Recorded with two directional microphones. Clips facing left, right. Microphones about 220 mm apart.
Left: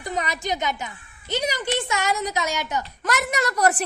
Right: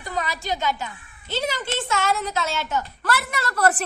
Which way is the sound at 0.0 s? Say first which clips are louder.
Left 1 dB; 20° left (ahead or behind).